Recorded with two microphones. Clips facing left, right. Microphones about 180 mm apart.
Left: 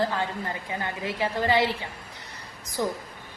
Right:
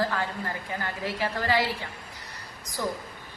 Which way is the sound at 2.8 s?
20° left (ahead or behind).